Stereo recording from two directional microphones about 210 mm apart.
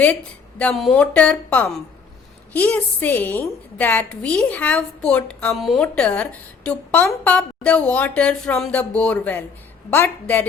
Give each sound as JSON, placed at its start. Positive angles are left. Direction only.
{"t": 0.6, "sound": "a woman's voice", "side_deg": 0}